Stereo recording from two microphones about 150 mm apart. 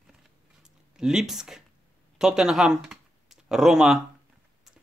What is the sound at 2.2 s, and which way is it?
Speech, 5° right (ahead or behind).